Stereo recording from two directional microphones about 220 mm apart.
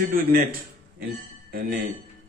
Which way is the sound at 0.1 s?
40° right (ahead or behind).